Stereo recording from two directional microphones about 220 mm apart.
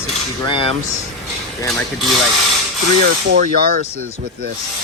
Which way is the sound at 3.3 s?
40° right (ahead or behind).